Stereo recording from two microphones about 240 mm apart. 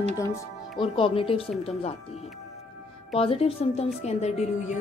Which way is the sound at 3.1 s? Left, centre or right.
Left.